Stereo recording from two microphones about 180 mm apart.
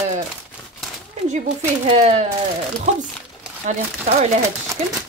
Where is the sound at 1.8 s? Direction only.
35° right (ahead or behind).